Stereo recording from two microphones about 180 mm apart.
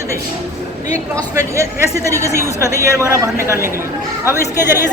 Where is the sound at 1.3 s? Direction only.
15° right (ahead or behind).